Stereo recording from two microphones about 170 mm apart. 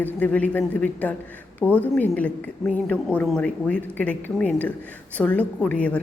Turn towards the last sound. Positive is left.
turn(degrees=5)  # may be behind; listen again after turning